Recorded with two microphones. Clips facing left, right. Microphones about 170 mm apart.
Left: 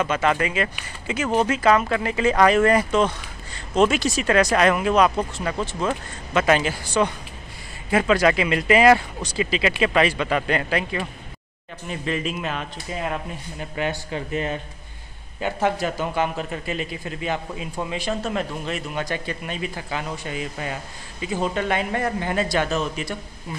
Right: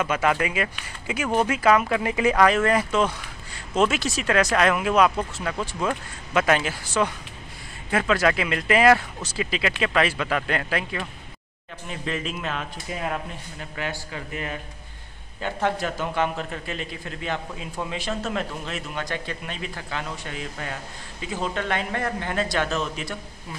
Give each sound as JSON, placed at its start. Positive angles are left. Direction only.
{"t": 0.0, "sound": "speech", "side_deg": -10}
{"t": 2.4, "sound": "a man's voice", "side_deg": 0}
{"t": 13.7, "sound": "speech", "side_deg": 20}
{"t": 15.4, "sound": "a man's voice", "side_deg": 5}